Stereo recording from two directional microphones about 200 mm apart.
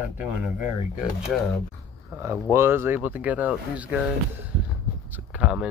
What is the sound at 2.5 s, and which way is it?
Speech, 10° right (ahead or behind).